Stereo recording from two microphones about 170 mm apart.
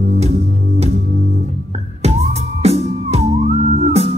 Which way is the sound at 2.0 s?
40° right (ahead or behind).